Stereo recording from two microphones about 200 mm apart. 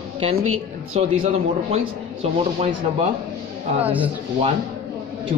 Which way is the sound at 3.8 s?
5° right (ahead or behind).